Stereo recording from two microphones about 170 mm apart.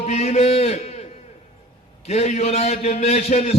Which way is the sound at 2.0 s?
40° left (ahead or behind).